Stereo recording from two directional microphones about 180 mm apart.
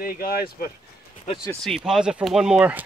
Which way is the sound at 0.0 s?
55° left (ahead or behind).